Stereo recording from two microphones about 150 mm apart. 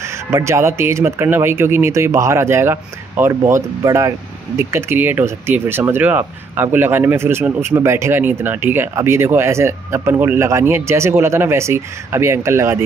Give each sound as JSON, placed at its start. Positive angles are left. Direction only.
{"t": 0.3, "sound": "speech", "side_deg": -20}